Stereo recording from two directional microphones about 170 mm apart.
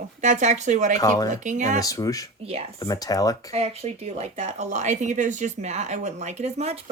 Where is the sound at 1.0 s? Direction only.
20° left (ahead or behind).